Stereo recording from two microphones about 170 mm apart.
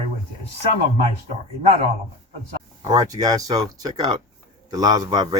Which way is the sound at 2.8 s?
20° right (ahead or behind).